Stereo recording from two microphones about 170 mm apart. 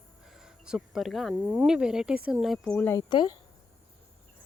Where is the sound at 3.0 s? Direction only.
25° left (ahead or behind).